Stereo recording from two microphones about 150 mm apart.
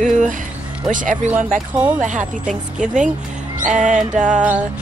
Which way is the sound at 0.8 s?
60° right (ahead or behind).